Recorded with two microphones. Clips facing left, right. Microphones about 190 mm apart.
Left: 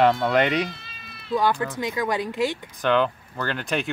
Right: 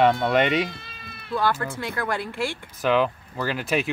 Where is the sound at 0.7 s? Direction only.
55° right (ahead or behind).